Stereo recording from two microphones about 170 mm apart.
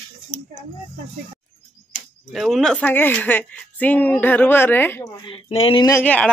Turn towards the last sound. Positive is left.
turn(degrees=10)  # may be behind; listen again after turning